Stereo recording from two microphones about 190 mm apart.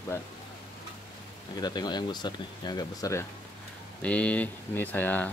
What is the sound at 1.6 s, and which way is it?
Speech, 20° left (ahead or behind).